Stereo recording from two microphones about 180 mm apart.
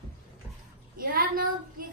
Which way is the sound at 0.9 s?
55° right (ahead or behind).